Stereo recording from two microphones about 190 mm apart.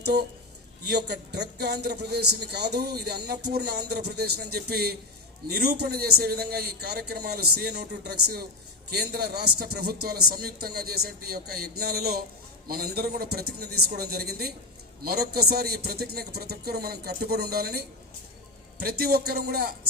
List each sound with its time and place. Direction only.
0.0 s a man's voice: 60° right (ahead or behind)